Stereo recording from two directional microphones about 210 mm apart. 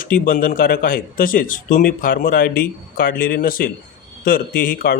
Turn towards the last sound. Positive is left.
turn(degrees=45)  # may be behind; listen again after turning